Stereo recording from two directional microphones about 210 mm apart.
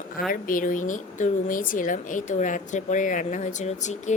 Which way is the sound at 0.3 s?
40° left (ahead or behind).